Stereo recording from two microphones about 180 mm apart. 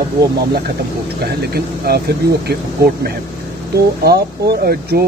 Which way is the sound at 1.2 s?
60° right (ahead or behind).